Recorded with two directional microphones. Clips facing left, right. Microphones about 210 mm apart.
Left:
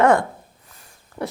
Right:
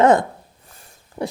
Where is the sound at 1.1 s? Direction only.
15° right (ahead or behind).